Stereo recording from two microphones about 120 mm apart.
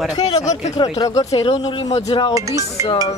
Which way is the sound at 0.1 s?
30° left (ahead or behind).